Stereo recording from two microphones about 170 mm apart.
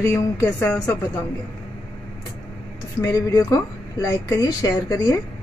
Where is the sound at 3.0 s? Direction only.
20° left (ahead or behind).